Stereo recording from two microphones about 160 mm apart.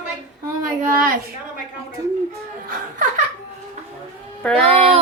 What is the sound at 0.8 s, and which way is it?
Speech, 60° right (ahead or behind).